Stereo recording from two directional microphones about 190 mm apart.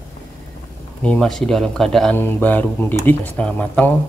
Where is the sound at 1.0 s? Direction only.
5° left (ahead or behind).